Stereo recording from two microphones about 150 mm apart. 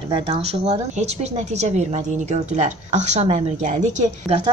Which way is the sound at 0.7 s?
50° right (ahead or behind).